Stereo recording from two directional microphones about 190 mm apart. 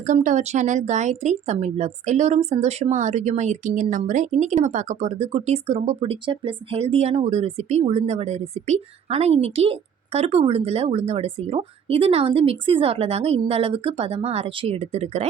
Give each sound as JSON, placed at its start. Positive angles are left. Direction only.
{"t": 0.1, "sound": "a woman's voice", "side_deg": -40}